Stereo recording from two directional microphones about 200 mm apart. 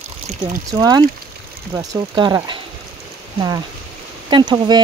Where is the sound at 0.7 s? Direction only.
20° right (ahead or behind).